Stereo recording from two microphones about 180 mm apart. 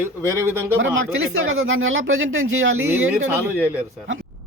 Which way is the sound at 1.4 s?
90° right.